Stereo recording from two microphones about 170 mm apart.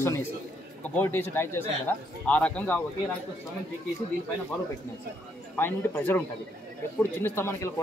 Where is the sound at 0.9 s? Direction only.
10° left (ahead or behind).